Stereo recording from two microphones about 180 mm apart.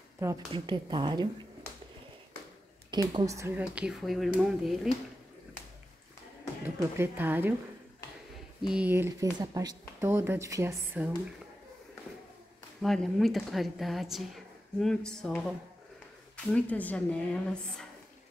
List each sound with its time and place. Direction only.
0.5 s speech: 25° right (ahead or behind)
2.9 s speech: 25° right (ahead or behind); by 4.7 s 5° right (ahead or behind)
6.6 s a woman's voice: 10° right (ahead or behind)
8.6 s speech: 5° right (ahead or behind)
12.8 s speech: centre (ahead or behind)
16.5 s a woman's voice: 10° left (ahead or behind)